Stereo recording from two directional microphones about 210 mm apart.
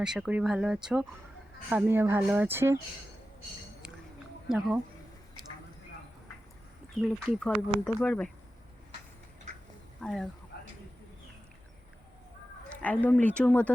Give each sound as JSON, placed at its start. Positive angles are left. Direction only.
{"t": 0.0, "sound": "speech", "side_deg": -5}
{"t": 4.4, "sound": "speech", "side_deg": 0}
{"t": 6.9, "sound": "speech", "side_deg": 0}
{"t": 10.0, "sound": "speech", "side_deg": 0}
{"t": 10.5, "sound": "a sound", "side_deg": 50}
{"t": 12.6, "sound": "a sound", "side_deg": 5}
{"t": 13.2, "sound": "speech", "side_deg": 5}